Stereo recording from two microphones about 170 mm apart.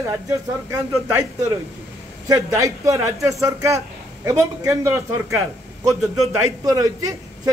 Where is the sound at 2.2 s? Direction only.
20° right (ahead or behind).